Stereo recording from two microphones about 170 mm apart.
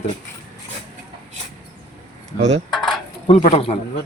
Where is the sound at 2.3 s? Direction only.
40° right (ahead or behind).